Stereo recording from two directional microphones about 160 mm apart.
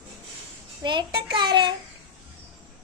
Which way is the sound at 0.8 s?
30° right (ahead or behind).